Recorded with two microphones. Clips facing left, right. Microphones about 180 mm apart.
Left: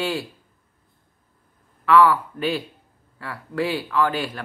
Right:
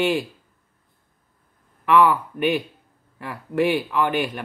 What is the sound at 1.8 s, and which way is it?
Speech, 20° right (ahead or behind).